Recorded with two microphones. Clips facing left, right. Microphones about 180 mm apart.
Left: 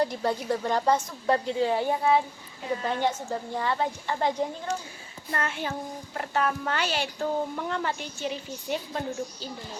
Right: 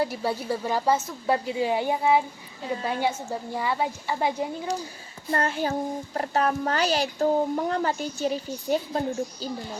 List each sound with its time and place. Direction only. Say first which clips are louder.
0.0 s speech: even; 5° right (ahead or behind)
5.3 s a woman's voice: right 5 dB; 35° right (ahead or behind)